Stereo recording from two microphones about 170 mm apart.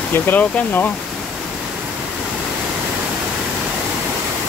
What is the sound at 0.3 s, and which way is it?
Speech, 10° left (ahead or behind).